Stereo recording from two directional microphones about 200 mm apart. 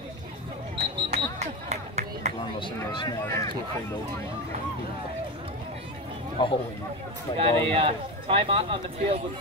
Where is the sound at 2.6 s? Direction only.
25° left (ahead or behind).